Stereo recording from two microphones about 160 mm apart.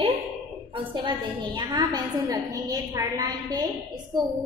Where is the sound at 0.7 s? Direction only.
30° right (ahead or behind).